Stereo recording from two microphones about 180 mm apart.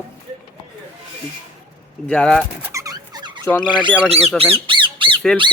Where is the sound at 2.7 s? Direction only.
20° right (ahead or behind).